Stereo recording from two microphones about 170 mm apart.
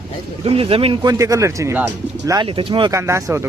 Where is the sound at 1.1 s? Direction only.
20° right (ahead or behind).